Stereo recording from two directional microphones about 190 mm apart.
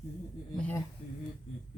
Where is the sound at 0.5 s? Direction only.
5° left (ahead or behind).